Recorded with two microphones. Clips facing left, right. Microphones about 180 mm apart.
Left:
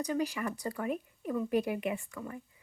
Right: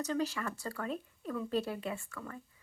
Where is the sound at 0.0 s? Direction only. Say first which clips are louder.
Left 2 dB; 15° left (ahead or behind).